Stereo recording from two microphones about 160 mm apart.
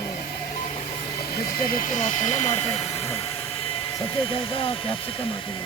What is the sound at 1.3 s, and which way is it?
Speech, 65° left (ahead or behind).